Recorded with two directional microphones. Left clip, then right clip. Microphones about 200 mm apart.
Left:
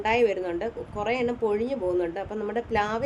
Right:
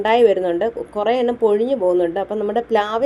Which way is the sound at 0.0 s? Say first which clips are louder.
Right 9 dB; 20° right (ahead or behind).